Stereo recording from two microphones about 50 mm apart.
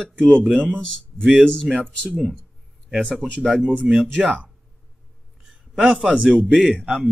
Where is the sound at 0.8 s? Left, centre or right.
Centre.